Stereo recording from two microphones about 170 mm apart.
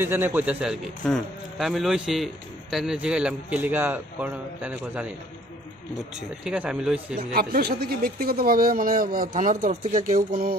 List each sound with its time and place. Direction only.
0.0 s a man's voice: 10° right (ahead or behind)
6.1 s a man's voice: 5° right (ahead or behind)
7.2 s speech: 60° right (ahead or behind)